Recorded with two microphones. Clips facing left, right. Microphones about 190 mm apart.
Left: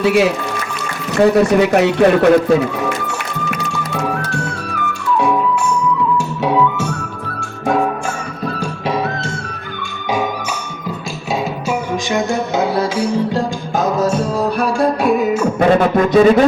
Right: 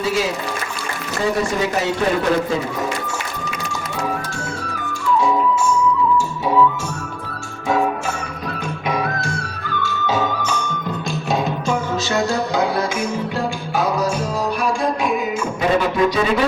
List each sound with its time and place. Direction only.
0.0 s speech: 65° left (ahead or behind)
9.8 s music: 15° left (ahead or behind)
12.1 s music: 20° left (ahead or behind)
15.1 s music: 45° left (ahead or behind)